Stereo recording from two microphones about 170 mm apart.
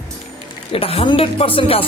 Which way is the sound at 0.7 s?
35° left (ahead or behind).